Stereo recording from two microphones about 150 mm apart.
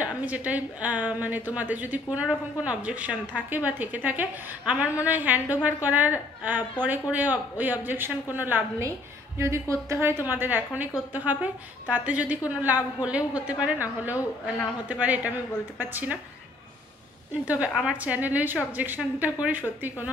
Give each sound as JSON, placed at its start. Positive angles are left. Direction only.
{"t": 0.0, "sound": "a woman's voice", "side_deg": -10}
{"t": 17.3, "sound": "a woman's voice", "side_deg": -10}